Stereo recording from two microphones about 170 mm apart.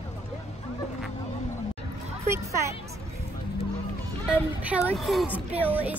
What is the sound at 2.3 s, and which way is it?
Speech, 15° right (ahead or behind).